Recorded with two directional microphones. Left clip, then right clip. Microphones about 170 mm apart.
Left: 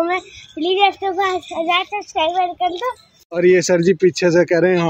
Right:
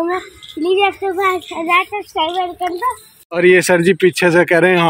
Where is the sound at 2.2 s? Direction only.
10° left (ahead or behind).